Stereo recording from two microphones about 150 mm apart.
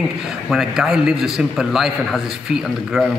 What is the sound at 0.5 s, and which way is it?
A man's voice, 5° right (ahead or behind).